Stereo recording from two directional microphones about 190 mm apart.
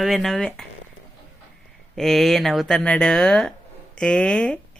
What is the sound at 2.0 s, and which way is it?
Speech, centre (ahead or behind).